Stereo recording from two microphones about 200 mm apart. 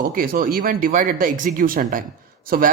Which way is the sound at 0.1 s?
45° right (ahead or behind).